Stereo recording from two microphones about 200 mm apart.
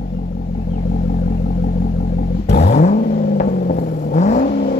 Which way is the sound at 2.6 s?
40° left (ahead or behind).